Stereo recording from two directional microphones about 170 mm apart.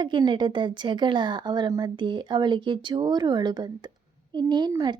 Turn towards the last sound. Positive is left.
turn(degrees=-25)  # may be behind; listen again after turning